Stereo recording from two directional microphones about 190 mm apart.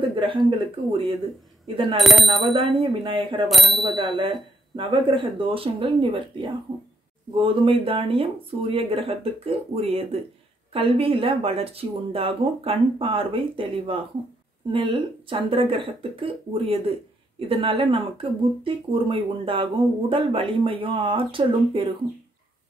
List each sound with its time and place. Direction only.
0.1 s speech: 25° right (ahead or behind)
2.0 s speech: centre (ahead or behind)
2.4 s speech: 30° right (ahead or behind)
3.4 s speech: centre (ahead or behind)
3.8 s speech: 25° right (ahead or behind)